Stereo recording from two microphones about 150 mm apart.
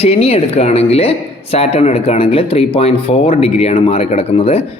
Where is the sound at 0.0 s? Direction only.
40° left (ahead or behind).